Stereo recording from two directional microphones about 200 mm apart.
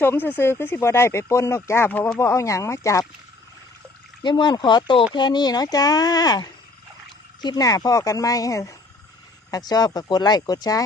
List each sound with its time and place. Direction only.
0.0 s speech: 10° left (ahead or behind)
4.2 s speech: 20° left (ahead or behind)